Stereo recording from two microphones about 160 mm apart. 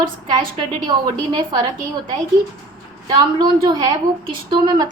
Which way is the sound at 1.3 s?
30° right (ahead or behind).